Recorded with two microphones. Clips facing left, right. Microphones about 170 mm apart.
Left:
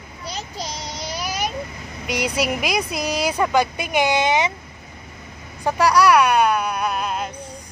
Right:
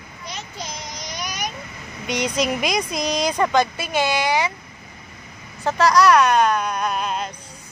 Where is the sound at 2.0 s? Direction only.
5° left (ahead or behind).